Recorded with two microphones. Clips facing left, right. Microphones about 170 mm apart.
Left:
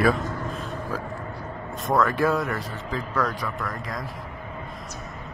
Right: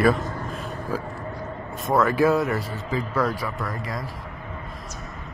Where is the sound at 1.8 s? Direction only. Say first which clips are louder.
Right 2 dB; centre (ahead or behind).